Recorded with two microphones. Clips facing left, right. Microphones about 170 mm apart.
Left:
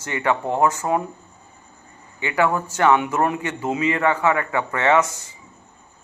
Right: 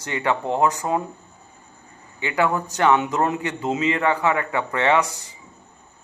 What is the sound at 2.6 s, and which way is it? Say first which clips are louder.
Speech: left 1 dB; 15° right (ahead or behind).